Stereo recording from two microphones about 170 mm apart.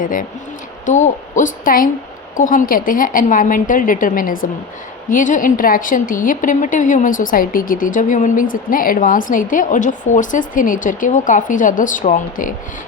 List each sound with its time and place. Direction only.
0.0 s a woman's voice: 50° left (ahead or behind)